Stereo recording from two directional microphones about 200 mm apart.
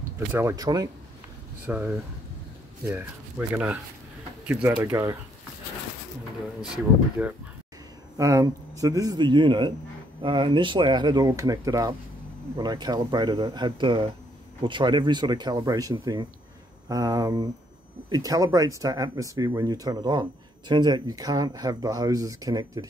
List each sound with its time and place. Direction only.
0.3 s speech: 15° right (ahead or behind)
1.7 s speech: 5° right (ahead or behind)
6.6 s speech: 5° right (ahead or behind)
8.2 s speech: 15° right (ahead or behind)